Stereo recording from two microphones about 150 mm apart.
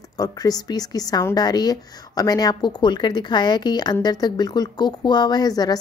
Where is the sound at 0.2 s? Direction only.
25° left (ahead or behind).